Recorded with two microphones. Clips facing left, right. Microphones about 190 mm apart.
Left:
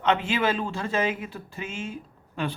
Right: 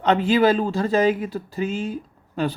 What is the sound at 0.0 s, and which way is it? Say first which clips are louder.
Speech: right 7 dB; 35° right (ahead or behind).